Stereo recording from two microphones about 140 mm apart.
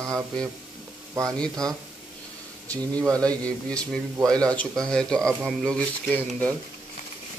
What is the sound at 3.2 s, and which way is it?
A man's voice, 10° left (ahead or behind).